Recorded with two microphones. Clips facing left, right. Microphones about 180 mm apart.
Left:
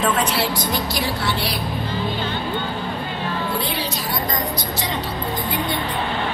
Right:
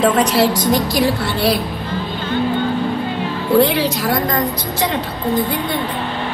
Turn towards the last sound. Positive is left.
turn(degrees=-90)